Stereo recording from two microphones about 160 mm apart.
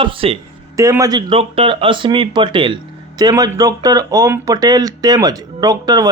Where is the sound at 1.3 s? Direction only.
35° right (ahead or behind).